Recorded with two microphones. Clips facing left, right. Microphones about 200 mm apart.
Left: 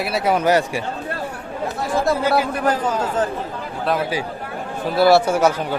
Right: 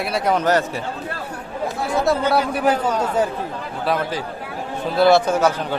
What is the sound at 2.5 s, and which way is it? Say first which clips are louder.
Speech: right 1 dB; 10° right (ahead or behind).